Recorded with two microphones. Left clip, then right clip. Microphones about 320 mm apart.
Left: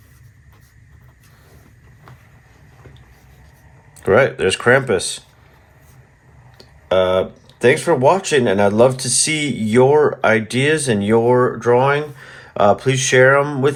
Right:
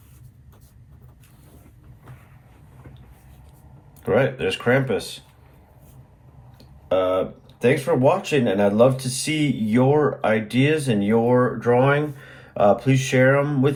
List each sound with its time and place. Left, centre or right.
4.0 s speech: centre
6.6 s speech: left